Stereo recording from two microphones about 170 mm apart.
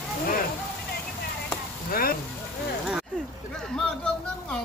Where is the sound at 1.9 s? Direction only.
60° left (ahead or behind).